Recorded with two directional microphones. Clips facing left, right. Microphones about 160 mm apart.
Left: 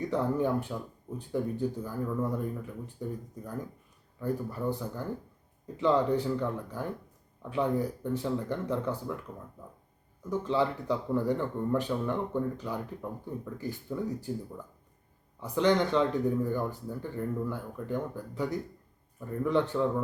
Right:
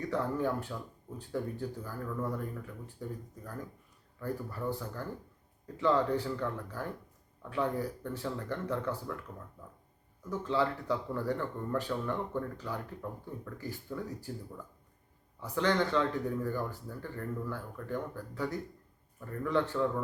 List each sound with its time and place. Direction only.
0.0 s speech: 20° left (ahead or behind)
4.2 s speech: 15° left (ahead or behind)
10.2 s speech: 15° left (ahead or behind)
15.4 s speech: 20° left (ahead or behind)